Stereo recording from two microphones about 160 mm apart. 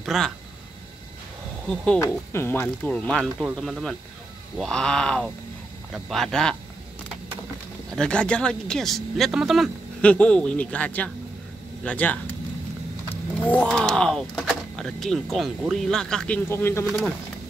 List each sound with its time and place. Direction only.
0.0 s speech: centre (ahead or behind)
2.0 s speech: 15° left (ahead or behind)
7.9 s speech: 5° left (ahead or behind)
16.4 s speech: 15° left (ahead or behind)
16.8 s speech: centre (ahead or behind)